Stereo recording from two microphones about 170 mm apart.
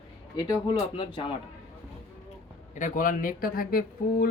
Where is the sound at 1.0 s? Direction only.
30° left (ahead or behind).